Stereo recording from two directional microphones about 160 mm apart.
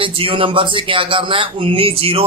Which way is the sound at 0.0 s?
35° right (ahead or behind).